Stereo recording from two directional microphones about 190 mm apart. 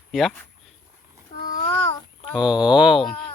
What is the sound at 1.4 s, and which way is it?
Child singing, 45° left (ahead or behind).